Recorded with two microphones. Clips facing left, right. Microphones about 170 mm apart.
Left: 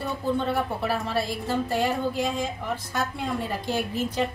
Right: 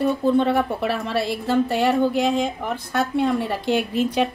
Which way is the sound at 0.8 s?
70° right (ahead or behind).